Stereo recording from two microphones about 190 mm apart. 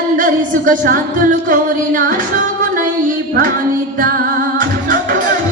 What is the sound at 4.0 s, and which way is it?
Music, 45° right (ahead or behind).